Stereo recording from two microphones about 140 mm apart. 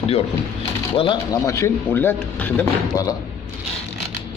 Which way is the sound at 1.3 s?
25° left (ahead or behind).